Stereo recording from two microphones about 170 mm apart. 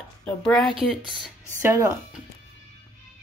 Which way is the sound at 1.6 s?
15° right (ahead or behind).